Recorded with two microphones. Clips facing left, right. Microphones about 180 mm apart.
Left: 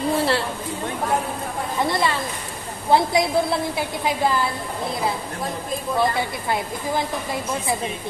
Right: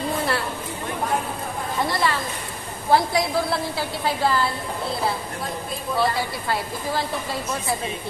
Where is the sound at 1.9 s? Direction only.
20° left (ahead or behind).